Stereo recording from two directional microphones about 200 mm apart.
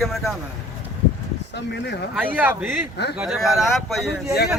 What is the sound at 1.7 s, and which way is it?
Speech, 60° left (ahead or behind).